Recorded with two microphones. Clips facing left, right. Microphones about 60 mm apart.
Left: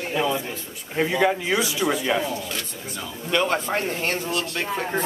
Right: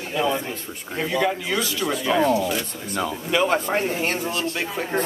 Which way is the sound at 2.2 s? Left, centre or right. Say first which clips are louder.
Right 7 dB; right.